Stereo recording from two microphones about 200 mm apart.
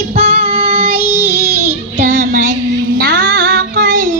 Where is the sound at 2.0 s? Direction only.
40° right (ahead or behind).